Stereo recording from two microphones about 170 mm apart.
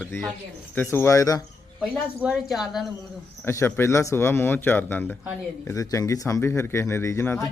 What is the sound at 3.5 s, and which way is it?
Speech, 15° left (ahead or behind).